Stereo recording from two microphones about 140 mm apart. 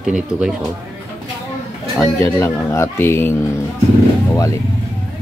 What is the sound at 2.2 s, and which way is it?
Speech, 20° left (ahead or behind).